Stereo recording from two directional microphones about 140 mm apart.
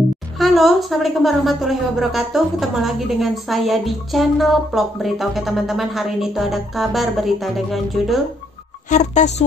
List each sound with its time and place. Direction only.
0.4 s a woman's voice: centre (ahead or behind)
8.9 s speech: 60° left (ahead or behind)